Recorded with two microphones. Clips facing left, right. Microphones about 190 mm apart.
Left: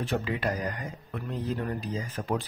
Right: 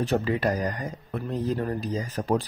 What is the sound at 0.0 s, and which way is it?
Speech, 40° right (ahead or behind).